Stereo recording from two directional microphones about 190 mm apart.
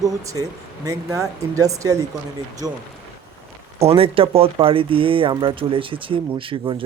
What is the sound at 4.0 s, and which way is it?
Speech, 30° right (ahead or behind).